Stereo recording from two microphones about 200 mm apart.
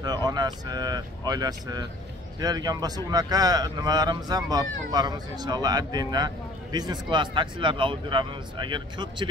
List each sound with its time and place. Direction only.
0.0 s speech: 20° right (ahead or behind)